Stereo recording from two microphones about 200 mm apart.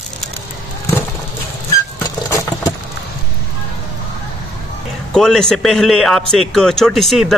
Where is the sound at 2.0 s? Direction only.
15° left (ahead or behind).